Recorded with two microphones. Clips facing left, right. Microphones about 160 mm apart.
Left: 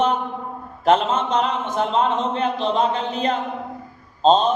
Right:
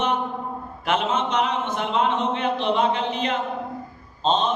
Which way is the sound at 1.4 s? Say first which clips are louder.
Left 2 dB; 35° left (ahead or behind).